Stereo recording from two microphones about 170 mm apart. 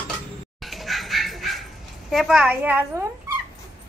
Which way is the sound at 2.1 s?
Centre (ahead or behind).